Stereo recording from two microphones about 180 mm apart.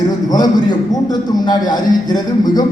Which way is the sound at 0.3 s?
20° left (ahead or behind).